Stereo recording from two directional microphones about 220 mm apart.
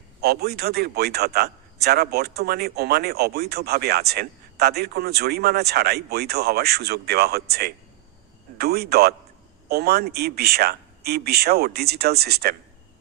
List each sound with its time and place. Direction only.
0.2 s speech: 45° right (ahead or behind)